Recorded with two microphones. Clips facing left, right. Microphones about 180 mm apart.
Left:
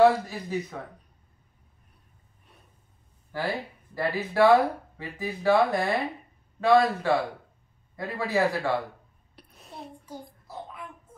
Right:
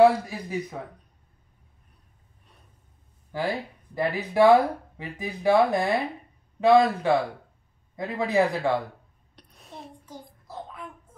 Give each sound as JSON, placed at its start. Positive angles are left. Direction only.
{"t": 0.0, "sound": "speech", "side_deg": -10}
{"t": 3.3, "sound": "a man's voice", "side_deg": -15}
{"t": 9.3, "sound": "a sound", "side_deg": 0}